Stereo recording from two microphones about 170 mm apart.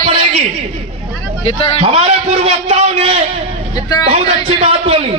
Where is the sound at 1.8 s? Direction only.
35° right (ahead or behind).